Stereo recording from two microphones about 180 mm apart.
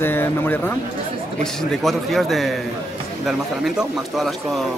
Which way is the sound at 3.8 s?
Centre (ahead or behind).